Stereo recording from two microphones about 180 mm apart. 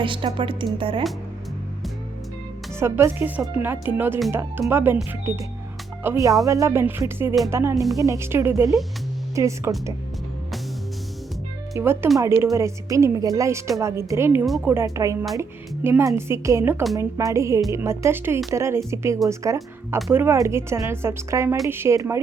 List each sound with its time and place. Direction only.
0.0 s speech: 30° right (ahead or behind)
2.7 s speech: 15° right (ahead or behind)
6.0 s speech: 15° right (ahead or behind)
11.7 s speech: 15° right (ahead or behind)
14.4 s speech: centre (ahead or behind)
14.7 s speech: 15° right (ahead or behind)